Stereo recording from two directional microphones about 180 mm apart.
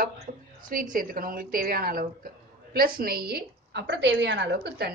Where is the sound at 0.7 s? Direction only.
50° right (ahead or behind).